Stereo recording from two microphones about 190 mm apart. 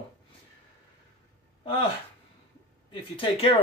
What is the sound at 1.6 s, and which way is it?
Speech, 30° left (ahead or behind).